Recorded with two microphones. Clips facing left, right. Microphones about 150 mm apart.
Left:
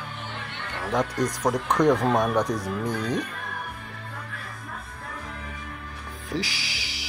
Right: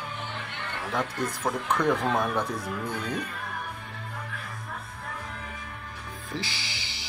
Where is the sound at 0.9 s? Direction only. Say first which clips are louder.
Left 5 dB; 15° left (ahead or behind).